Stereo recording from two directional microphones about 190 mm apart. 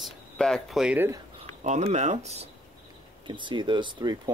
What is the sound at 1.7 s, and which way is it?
Speech, 35° right (ahead or behind).